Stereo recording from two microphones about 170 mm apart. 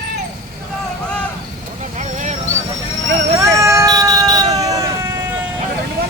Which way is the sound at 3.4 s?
15° right (ahead or behind).